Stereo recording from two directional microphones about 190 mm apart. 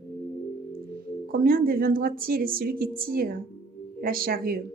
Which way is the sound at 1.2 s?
50° right (ahead or behind).